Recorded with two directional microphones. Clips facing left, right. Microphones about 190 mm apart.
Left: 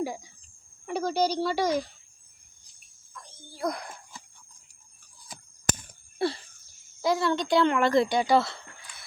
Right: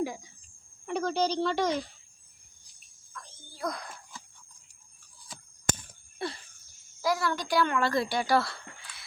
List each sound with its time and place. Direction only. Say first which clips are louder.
0.9 s speech: left 2 dB; 10° left (ahead or behind)
3.6 s speech: left 4 dB; 20° left (ahead or behind)
6.1 s a sound: left 8 dB; 30° left (ahead or behind)
7.0 s speech: left 4 dB; 25° left (ahead or behind)